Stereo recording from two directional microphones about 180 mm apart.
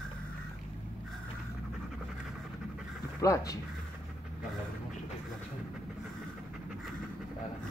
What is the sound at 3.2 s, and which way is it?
Speech, 20° left (ahead or behind).